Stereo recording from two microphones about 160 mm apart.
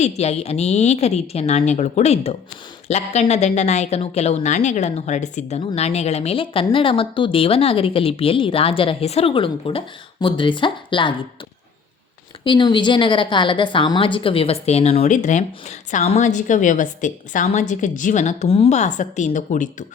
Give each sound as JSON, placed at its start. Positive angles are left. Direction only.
{"t": 0.0, "sound": "a woman's voice", "side_deg": 40}
{"t": 12.5, "sound": "a woman's voice", "side_deg": 30}